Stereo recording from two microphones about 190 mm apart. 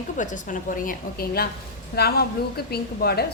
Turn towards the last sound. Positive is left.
turn(degrees=55)  # may be behind; listen again after turning